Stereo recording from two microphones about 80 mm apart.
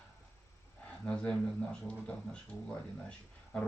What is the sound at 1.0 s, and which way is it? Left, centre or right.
Speech, centre.